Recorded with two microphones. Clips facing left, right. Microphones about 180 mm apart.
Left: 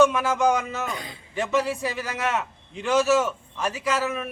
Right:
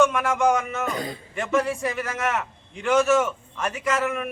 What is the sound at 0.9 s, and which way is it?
Speech, 45° right (ahead or behind).